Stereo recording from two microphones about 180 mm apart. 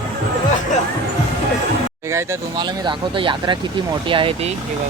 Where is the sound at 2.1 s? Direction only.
25° right (ahead or behind).